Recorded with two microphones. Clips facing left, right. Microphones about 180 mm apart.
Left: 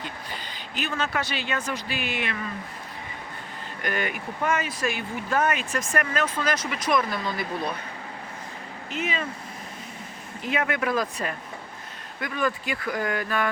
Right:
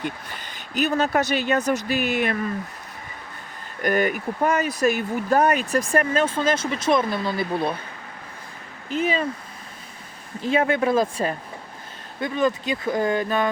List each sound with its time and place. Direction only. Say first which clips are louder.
0.0 s speech: right 5 dB; 45° right (ahead or behind)
3.8 s speech: right 8 dB; 40° right (ahead or behind)
8.9 s speech: right 7 dB; 35° right (ahead or behind)
10.4 s speech: right 6 dB; 30° right (ahead or behind)